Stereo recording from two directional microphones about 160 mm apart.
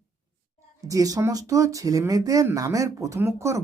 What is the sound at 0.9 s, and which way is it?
Speech, 20° right (ahead or behind).